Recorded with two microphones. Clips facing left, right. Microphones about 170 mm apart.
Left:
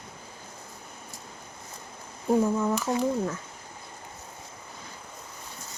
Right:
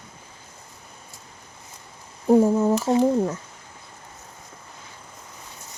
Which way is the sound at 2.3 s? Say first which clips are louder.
Right 7 dB; 30° right (ahead or behind).